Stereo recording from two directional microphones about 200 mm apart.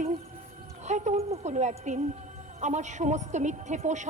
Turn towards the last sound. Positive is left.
turn(degrees=-35)  # may be behind; listen again after turning